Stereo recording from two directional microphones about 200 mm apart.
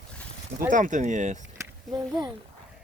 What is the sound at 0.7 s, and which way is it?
Speech, 40° right (ahead or behind).